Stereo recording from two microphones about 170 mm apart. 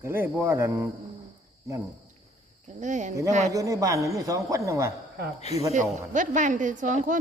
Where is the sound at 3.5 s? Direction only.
20° right (ahead or behind).